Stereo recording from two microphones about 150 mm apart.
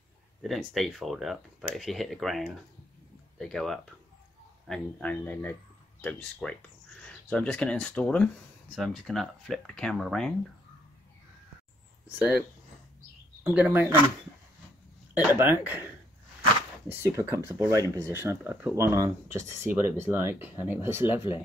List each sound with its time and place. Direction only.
0.4 s speech: centre (ahead or behind)
13.4 s speech: 10° right (ahead or behind)
15.1 s speech: 15° right (ahead or behind)
16.8 s speech: 15° right (ahead or behind)